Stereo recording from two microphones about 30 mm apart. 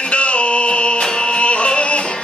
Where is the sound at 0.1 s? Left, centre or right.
Left.